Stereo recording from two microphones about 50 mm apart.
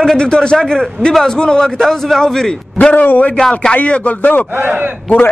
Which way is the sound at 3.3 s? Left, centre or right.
Centre.